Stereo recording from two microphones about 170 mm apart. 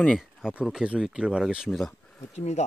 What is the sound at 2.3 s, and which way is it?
Speech, 40° left (ahead or behind).